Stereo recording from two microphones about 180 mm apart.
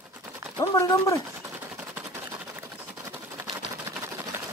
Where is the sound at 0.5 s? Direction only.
15° left (ahead or behind).